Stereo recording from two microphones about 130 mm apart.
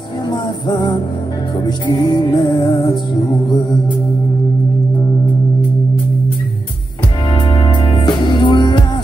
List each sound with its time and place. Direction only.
0.3 s music: 35° left (ahead or behind)
2.3 s music: 30° left (ahead or behind)
7.5 s music: 35° left (ahead or behind)